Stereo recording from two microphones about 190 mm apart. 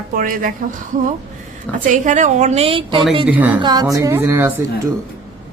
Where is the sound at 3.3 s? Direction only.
10° right (ahead or behind).